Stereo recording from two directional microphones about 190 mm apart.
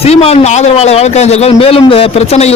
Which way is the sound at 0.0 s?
30° left (ahead or behind).